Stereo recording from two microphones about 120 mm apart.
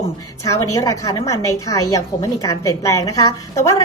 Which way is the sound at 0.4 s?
25° left (ahead or behind).